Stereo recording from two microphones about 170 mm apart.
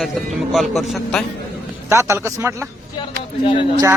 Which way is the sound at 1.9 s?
15° right (ahead or behind).